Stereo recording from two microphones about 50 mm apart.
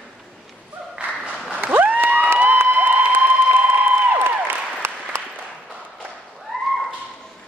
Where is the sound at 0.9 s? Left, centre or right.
Right.